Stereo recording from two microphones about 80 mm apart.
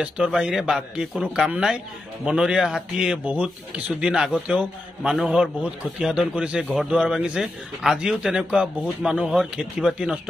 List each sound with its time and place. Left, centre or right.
0.0 s a man's voice: centre